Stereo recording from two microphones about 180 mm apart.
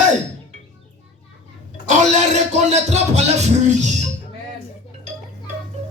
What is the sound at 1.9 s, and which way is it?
Music, 40° right (ahead or behind).